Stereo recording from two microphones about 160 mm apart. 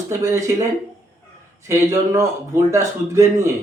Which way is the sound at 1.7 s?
20° right (ahead or behind).